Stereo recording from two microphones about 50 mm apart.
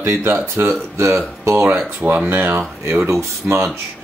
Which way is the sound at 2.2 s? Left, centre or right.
Right.